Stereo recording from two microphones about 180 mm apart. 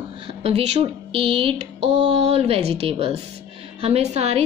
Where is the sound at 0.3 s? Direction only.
35° right (ahead or behind).